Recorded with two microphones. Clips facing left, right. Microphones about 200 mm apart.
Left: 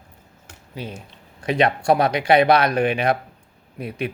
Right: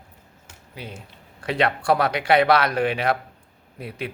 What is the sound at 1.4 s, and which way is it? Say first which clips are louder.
Speech: left 3 dB; 20° left (ahead or behind).